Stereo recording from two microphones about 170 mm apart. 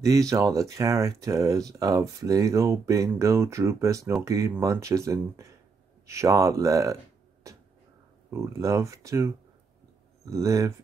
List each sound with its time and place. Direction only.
0.0 s speech: 20° right (ahead or behind)
7.5 s a sound: 20° right (ahead or behind)
8.3 s speech: 20° right (ahead or behind)